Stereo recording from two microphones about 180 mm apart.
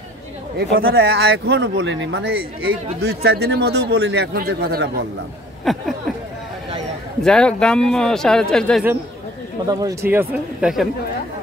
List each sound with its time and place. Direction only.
0.6 s speech: 75° right (ahead or behind)
5.7 s a man's voice: centre (ahead or behind)
7.2 s a man's voice: 5° left (ahead or behind)
9.7 s speech: 20° right (ahead or behind)